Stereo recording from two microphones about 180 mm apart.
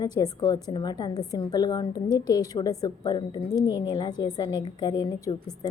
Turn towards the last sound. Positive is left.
turn(degrees=25)  # may be behind; listen again after turning